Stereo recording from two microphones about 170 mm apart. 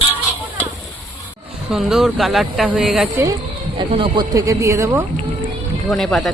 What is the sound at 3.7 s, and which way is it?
Speech, 30° right (ahead or behind).